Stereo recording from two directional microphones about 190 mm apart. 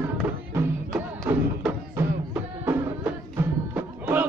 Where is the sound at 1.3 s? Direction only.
10° right (ahead or behind).